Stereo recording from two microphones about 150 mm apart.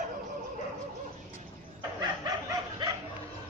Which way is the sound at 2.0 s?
25° right (ahead or behind).